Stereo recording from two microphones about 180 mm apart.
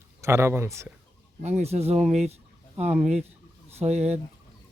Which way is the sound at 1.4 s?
35° right (ahead or behind).